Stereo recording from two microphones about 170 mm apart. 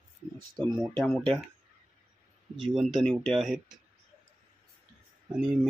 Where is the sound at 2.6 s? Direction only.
Centre (ahead or behind).